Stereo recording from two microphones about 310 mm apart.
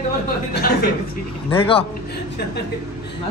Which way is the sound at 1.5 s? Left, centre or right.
Centre.